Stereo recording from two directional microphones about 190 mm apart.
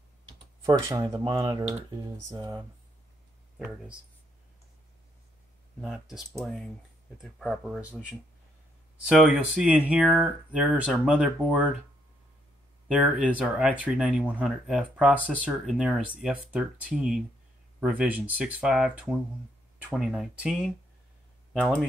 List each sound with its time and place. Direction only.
0.7 s speech: 15° right (ahead or behind)
5.8 s speech: centre (ahead or behind)
12.8 s speech: 5° right (ahead or behind)